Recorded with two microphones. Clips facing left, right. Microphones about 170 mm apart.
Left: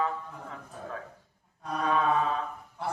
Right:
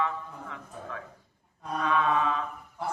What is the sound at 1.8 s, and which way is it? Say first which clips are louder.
Mantra: even; 40° left (ahead or behind).